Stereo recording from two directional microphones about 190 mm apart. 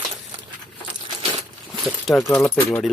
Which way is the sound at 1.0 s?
25° right (ahead or behind).